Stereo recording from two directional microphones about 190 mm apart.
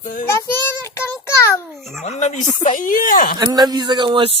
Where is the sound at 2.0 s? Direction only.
35° left (ahead or behind).